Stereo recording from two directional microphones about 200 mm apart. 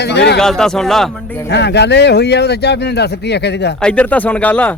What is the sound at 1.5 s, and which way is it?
Speech, 60° left (ahead or behind).